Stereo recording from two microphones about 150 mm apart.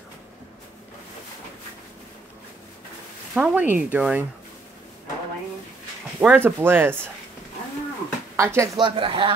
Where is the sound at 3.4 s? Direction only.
10° right (ahead or behind).